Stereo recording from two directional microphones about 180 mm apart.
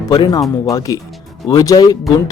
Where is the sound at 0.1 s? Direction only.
20° left (ahead or behind).